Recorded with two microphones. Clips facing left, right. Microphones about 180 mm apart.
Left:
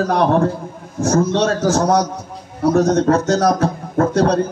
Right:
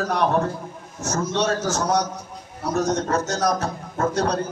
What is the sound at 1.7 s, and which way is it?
Speech, 60° left (ahead or behind).